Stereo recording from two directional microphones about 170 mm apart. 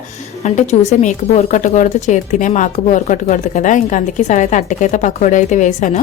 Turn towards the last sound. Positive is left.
turn(degrees=45)  # may be behind; listen again after turning